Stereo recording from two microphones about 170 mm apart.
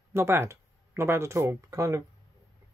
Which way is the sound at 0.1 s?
15° right (ahead or behind).